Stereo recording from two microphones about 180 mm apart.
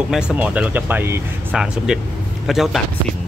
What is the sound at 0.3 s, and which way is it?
Speech, 5° right (ahead or behind).